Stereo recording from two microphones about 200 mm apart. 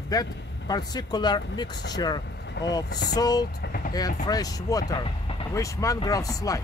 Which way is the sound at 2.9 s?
55° left (ahead or behind).